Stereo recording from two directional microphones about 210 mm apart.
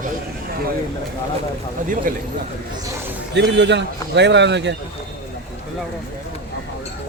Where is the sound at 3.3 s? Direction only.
55° right (ahead or behind).